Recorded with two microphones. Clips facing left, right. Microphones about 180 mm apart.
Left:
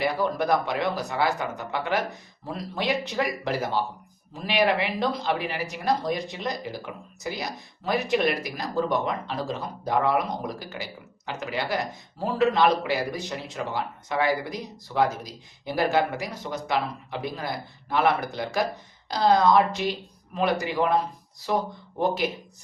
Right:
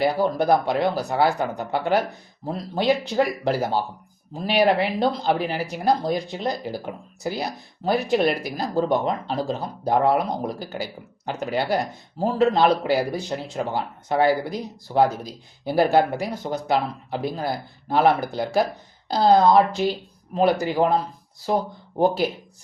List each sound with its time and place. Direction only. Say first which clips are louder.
0.0 s speech: right 4 dB; 35° right (ahead or behind)